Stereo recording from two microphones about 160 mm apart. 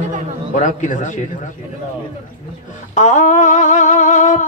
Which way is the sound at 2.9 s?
50° left (ahead or behind).